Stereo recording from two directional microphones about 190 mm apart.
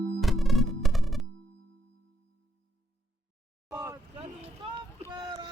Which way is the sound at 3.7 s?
15° right (ahead or behind).